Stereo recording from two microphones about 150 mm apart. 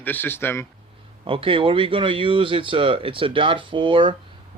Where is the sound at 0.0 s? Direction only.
10° left (ahead or behind).